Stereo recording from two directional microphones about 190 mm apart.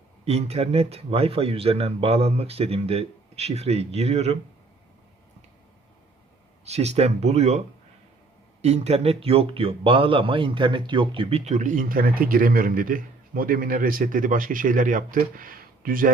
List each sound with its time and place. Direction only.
0.3 s speech: 35° right (ahead or behind)
6.7 s speech: 35° right (ahead or behind)
8.6 s speech: 35° right (ahead or behind)